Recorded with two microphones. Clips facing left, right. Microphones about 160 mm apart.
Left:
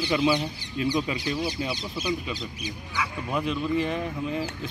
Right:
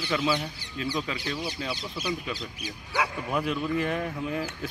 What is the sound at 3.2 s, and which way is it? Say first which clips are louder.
Speech: left 1 dB; centre (ahead or behind).